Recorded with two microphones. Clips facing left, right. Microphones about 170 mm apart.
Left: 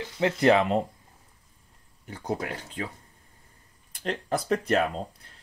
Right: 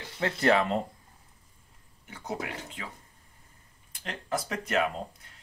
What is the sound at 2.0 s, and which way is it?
Speech, 35° left (ahead or behind).